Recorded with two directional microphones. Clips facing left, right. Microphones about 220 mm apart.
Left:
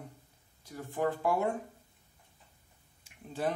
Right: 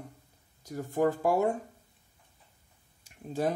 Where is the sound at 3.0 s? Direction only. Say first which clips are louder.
Right 4 dB; 40° right (ahead or behind).